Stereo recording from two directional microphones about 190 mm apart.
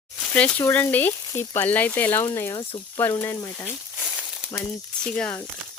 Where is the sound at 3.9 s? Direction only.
5° right (ahead or behind).